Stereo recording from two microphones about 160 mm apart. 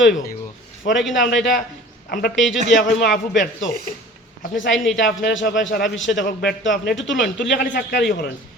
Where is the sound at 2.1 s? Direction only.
70° left (ahead or behind).